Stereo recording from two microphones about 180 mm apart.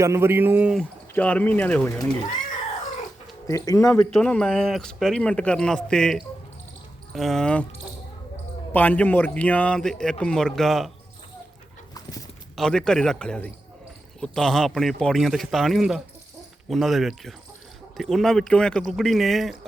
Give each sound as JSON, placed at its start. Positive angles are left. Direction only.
{"t": 0.0, "sound": "speech", "side_deg": -15}
{"t": 0.8, "sound": "a man's voice", "side_deg": 10}
{"t": 3.4, "sound": "a man's voice", "side_deg": 20}
{"t": 4.1, "sound": "speech", "side_deg": 5}
{"t": 8.7, "sound": "a man's voice", "side_deg": 10}
{"t": 12.5, "sound": "speech", "side_deg": 5}